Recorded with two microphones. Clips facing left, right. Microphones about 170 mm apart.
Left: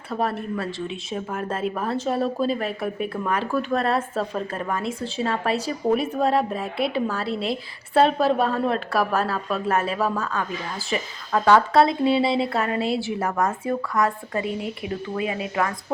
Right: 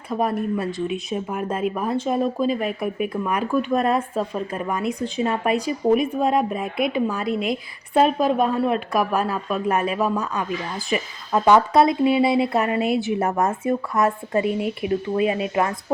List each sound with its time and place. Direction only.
0.1 s a woman's voice: 15° right (ahead or behind)
6.7 s a woman's voice: 30° left (ahead or behind)
8.2 s a woman's voice: 15° right (ahead or behind)